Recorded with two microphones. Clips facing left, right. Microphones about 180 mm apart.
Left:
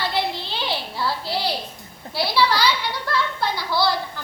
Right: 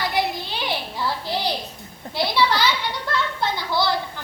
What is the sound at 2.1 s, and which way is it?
Speech, 20° right (ahead or behind).